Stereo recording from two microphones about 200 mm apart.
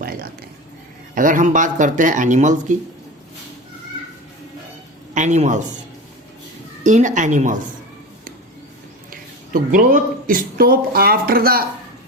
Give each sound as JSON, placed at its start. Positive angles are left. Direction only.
{"t": 0.0, "sound": "a sound", "side_deg": -45}
{"t": 1.1, "sound": "speech", "side_deg": -40}
{"t": 5.1, "sound": "speech", "side_deg": -35}
{"t": 6.8, "sound": "speech", "side_deg": -40}
{"t": 9.5, "sound": "speech", "side_deg": -45}